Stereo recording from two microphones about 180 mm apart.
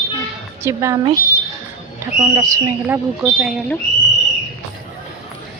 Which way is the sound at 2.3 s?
20° right (ahead or behind).